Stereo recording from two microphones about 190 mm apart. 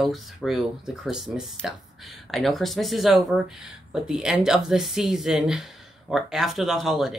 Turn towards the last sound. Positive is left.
turn(degrees=0)  # may be behind; listen again after turning